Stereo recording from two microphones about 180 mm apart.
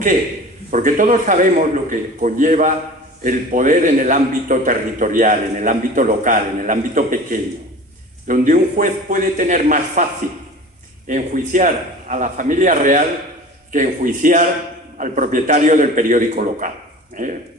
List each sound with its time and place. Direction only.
0.7 s a man's voice: 45° right (ahead or behind)
11.1 s a man's voice: 45° right (ahead or behind)